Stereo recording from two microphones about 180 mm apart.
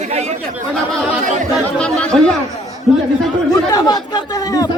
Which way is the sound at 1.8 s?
5° left (ahead or behind).